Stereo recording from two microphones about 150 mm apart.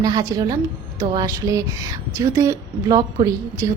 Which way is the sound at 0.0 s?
25° right (ahead or behind).